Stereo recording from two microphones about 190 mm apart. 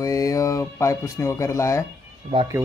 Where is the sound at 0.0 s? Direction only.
15° left (ahead or behind).